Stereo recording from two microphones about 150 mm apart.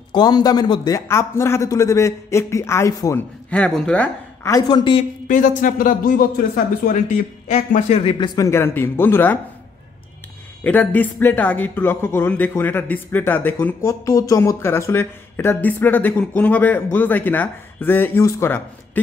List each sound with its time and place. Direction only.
0.1 s a man's voice: 25° left (ahead or behind)
3.4 s speech: 10° left (ahead or behind)
4.5 s speech: 30° left (ahead or behind)
5.3 s speech: 60° left (ahead or behind); by 8.3 s 40° left (ahead or behind)
8.4 s speech: 20° left (ahead or behind)
10.6 s speech: 10° left (ahead or behind)